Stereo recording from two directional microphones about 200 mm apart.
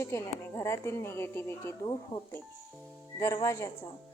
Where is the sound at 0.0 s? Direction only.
15° left (ahead or behind).